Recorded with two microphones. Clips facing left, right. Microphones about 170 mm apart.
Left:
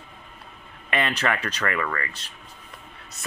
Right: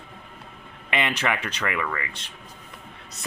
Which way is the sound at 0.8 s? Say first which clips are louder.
Left 1 dB; 15° right (ahead or behind).